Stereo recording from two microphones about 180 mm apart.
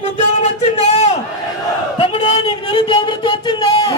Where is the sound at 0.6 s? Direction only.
35° left (ahead or behind).